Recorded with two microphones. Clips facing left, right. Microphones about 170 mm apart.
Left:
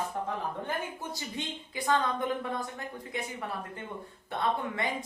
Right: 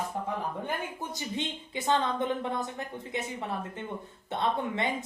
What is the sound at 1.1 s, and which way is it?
A man's voice, 20° right (ahead or behind).